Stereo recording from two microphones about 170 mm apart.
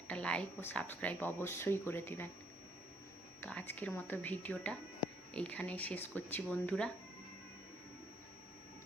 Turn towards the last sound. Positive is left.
turn(degrees=5)  # may be behind; listen again after turning